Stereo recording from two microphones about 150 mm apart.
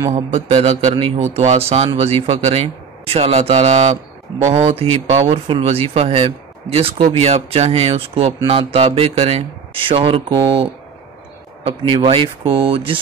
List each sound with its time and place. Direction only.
0.1 s a man's voice: 40° right (ahead or behind)
12.1 s speech: 35° right (ahead or behind)